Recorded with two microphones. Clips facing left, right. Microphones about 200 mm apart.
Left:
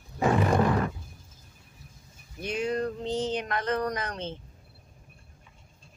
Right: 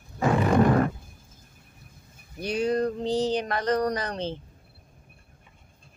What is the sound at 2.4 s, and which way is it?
Speech, 35° right (ahead or behind).